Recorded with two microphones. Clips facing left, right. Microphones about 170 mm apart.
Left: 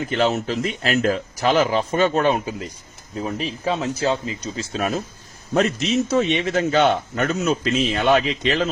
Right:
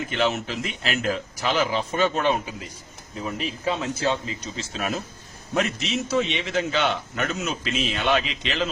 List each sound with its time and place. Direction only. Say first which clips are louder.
0.1 s a man's voice: left 5 dB; 40° left (ahead or behind)
3.2 s a man's voice: left 4 dB; 30° left (ahead or behind)